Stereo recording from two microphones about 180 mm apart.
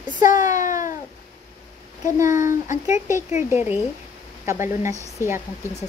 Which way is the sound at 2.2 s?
45° left (ahead or behind).